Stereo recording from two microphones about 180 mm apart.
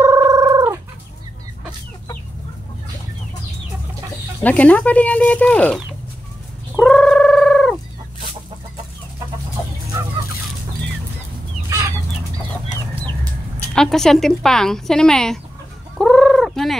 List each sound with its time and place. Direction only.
0.0 s fowl: 20° right (ahead or behind)
4.4 s speech: 10° left (ahead or behind)
6.7 s bird: centre (ahead or behind)
13.7 s speech: centre (ahead or behind)
16.0 s fowl: centre (ahead or behind)